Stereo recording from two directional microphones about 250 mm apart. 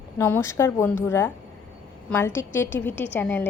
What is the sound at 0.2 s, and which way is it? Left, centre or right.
A woman's voice, centre.